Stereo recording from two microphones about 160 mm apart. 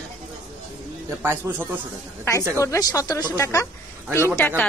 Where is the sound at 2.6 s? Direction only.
20° left (ahead or behind).